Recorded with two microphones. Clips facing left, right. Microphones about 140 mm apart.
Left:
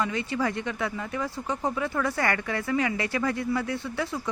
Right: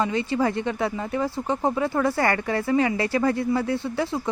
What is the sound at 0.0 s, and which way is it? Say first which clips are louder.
Speech: right 5 dB; 30° right (ahead or behind).